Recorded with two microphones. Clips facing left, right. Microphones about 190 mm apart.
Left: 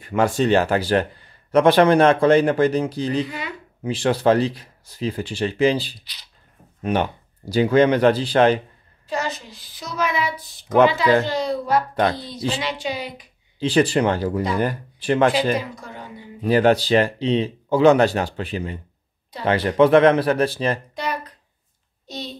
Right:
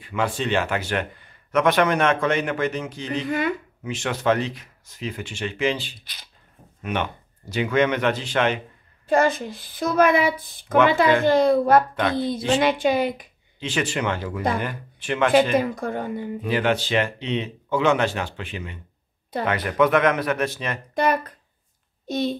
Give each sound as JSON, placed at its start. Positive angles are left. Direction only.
{"t": 0.0, "sound": "speech", "side_deg": 45}
{"t": 3.3, "sound": "a woman's voice", "side_deg": -50}
{"t": 3.8, "sound": "speech", "side_deg": 30}
{"t": 9.0, "sound": "a woman's voice", "side_deg": -50}
{"t": 11.9, "sound": "speech", "side_deg": 35}
{"t": 12.5, "sound": "a woman's voice", "side_deg": -55}
{"t": 13.6, "sound": "speech", "side_deg": 35}
{"t": 15.5, "sound": "a woman's voice", "side_deg": -55}
{"t": 16.4, "sound": "speech", "side_deg": 40}
{"t": 20.9, "sound": "a woman's voice", "side_deg": -50}